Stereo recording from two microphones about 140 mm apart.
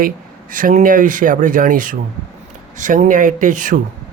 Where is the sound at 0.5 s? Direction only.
70° right (ahead or behind).